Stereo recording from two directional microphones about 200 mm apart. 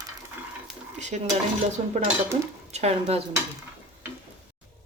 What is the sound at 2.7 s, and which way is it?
Dishes, 30° right (ahead or behind).